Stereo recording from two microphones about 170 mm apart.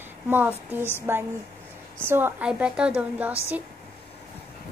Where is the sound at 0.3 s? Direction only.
10° right (ahead or behind).